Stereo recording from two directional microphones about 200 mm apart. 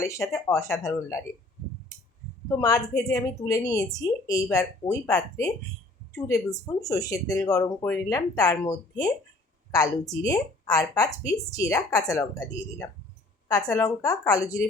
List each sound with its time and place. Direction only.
0.3 s speech: 15° left (ahead or behind)
2.5 s speech: 20° left (ahead or behind)
13.5 s speech: 15° left (ahead or behind)